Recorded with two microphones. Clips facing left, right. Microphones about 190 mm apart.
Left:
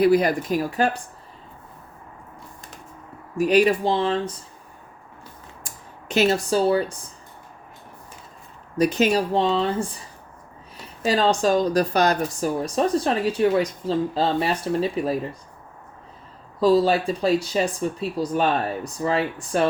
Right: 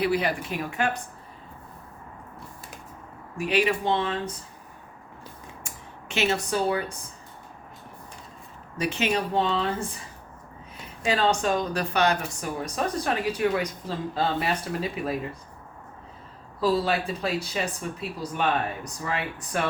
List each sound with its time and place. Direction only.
0.0 s a woman's voice: 45° left (ahead or behind)
3.3 s a woman's voice: 40° left (ahead or behind)
5.6 s speech: 40° left (ahead or behind)
8.8 s a woman's voice: 40° left (ahead or behind)
11.0 s a woman's voice: 35° left (ahead or behind)
16.8 s a woman's voice: 30° left (ahead or behind)